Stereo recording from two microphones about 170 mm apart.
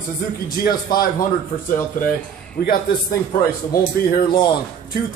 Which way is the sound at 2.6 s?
65° left (ahead or behind).